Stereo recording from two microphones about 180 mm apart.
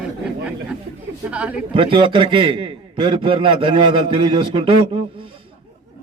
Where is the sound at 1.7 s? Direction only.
30° right (ahead or behind).